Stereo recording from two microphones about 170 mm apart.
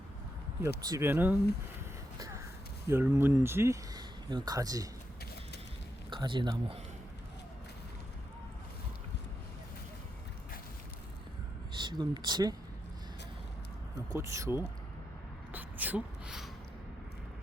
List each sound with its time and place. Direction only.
0.9 s speech: 15° right (ahead or behind)
2.1 s a sound: 20° right (ahead or behind)
2.8 s speech: 15° right (ahead or behind)
6.1 s speech: 25° right (ahead or behind)
11.8 s speech: 25° right (ahead or behind)
14.1 s speech: 15° right (ahead or behind)
15.5 s a sound: 10° right (ahead or behind)